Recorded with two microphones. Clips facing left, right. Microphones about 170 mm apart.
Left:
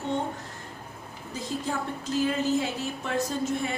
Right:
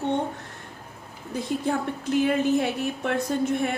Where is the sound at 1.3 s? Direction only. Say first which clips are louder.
Right 5 dB; 60° right (ahead or behind).